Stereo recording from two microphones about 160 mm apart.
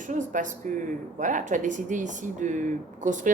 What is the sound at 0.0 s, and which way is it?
Speech, 55° right (ahead or behind).